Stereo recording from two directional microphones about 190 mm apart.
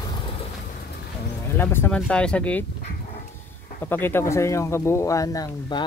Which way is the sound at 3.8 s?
10° left (ahead or behind).